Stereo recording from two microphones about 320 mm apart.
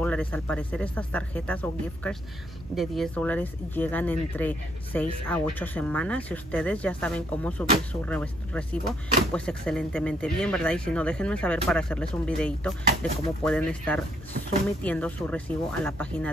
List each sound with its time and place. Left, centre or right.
0.0 s speech: centre